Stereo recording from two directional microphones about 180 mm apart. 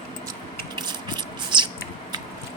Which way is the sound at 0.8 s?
25° right (ahead or behind).